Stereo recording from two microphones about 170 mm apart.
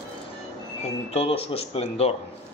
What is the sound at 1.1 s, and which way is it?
A man's voice, 35° left (ahead or behind).